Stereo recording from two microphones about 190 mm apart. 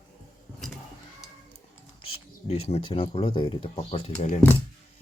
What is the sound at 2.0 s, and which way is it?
Speech, 30° left (ahead or behind).